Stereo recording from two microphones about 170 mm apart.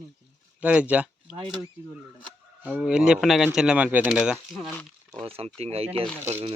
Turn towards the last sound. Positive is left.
turn(degrees=-10)  # may be behind; listen again after turning